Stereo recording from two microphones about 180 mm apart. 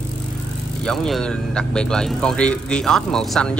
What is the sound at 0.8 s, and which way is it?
A man's voice, centre (ahead or behind).